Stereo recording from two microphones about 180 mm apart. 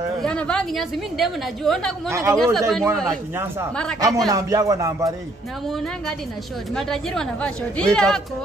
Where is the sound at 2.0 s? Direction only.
15° right (ahead or behind).